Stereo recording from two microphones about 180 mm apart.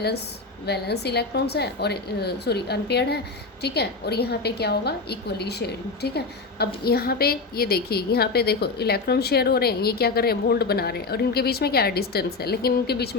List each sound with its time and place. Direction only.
0.6 s a woman's voice: 65° left (ahead or behind)